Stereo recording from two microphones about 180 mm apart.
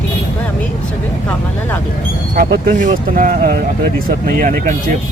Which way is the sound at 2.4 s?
50° right (ahead or behind).